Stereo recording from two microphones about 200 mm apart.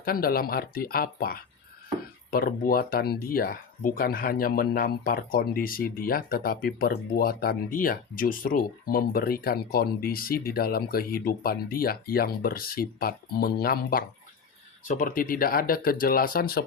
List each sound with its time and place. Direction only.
0.0 s speech: 45° left (ahead or behind)